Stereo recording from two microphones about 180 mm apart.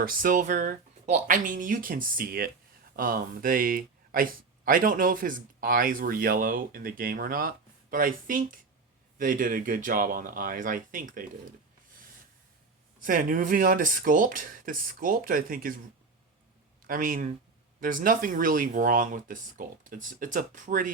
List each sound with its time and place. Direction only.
0.0 s speech: 50° right (ahead or behind)
13.0 s speech: 50° right (ahead or behind)
16.8 s speech: 50° right (ahead or behind)